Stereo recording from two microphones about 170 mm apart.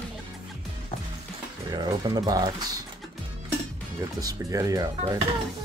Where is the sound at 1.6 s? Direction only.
25° right (ahead or behind).